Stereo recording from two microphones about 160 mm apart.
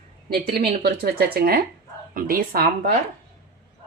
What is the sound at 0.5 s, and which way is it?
Speech, 80° right.